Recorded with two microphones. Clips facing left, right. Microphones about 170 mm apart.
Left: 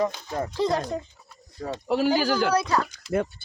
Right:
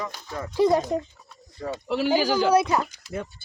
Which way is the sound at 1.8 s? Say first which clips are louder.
Left 2 dB; 40° left (ahead or behind).